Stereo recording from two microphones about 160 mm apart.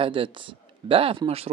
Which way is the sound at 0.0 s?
35° right (ahead or behind).